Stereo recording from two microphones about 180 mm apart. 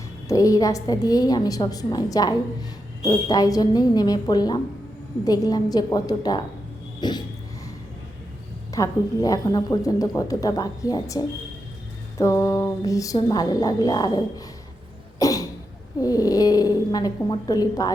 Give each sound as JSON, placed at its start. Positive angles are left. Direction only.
{"t": 0.3, "sound": "a woman's voice", "side_deg": 20}
{"t": 8.7, "sound": "a woman's voice", "side_deg": 20}
{"t": 15.2, "sound": "cough", "side_deg": 20}
{"t": 16.0, "sound": "a woman's voice", "side_deg": 20}